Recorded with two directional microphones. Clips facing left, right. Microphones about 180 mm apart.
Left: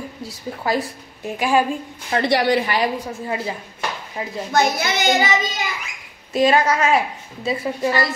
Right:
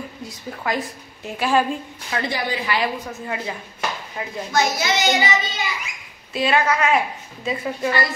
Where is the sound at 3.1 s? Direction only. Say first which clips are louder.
Left 3 dB; 30° left (ahead or behind).